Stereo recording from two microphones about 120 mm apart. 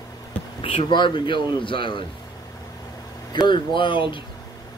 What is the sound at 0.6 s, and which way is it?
Speech, 50° left (ahead or behind).